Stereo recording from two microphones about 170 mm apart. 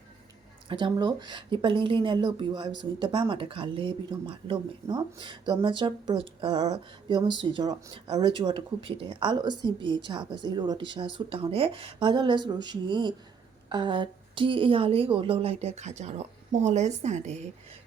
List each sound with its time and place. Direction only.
0.7 s a woman's voice: 25° right (ahead or behind); by 17.3 s 45° right (ahead or behind)